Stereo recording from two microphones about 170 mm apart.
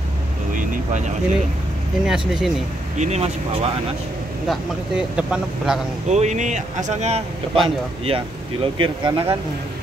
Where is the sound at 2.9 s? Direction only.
40° right (ahead or behind).